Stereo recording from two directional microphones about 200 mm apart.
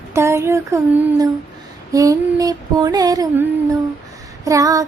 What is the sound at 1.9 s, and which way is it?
Music, 15° right (ahead or behind).